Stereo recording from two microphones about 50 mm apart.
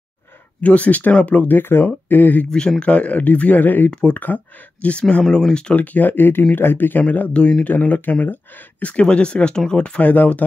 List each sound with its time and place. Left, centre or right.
0.6 s speech: left
1.6 s speech: left
2.8 s speech: left
3.9 s speech: left
5.2 s speech: centre
5.8 s speech: left
8.8 s speech: left